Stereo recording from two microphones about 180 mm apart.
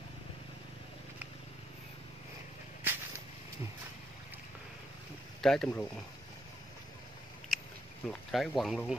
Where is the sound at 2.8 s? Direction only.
10° right (ahead or behind).